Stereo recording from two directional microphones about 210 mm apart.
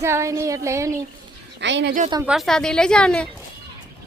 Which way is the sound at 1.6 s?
60° right (ahead or behind).